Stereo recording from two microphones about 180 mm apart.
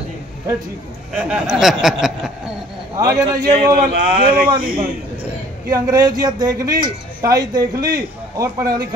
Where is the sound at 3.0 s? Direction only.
20° right (ahead or behind).